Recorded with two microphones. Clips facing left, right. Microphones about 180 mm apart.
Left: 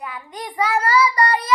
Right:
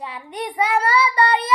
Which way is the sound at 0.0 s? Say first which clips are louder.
Right 3 dB; 25° right (ahead or behind).